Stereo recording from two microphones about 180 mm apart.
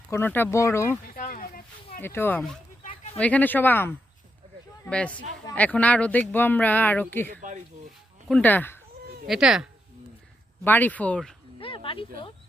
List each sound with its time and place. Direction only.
0.1 s speech: 10° left (ahead or behind)
1.1 s a sound: 50° left (ahead or behind)
2.0 s speech: 10° left (ahead or behind)
9.2 s speech: centre (ahead or behind)
10.6 s speech: 10° left (ahead or behind)
11.6 s a sound: 30° left (ahead or behind)